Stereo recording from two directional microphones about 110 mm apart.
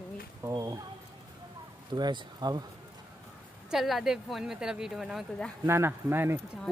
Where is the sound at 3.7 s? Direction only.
Centre (ahead or behind).